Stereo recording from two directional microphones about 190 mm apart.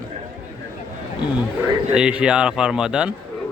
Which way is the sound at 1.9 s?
5° right (ahead or behind).